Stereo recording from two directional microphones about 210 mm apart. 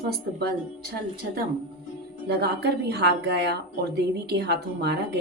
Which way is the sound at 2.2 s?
50° right (ahead or behind).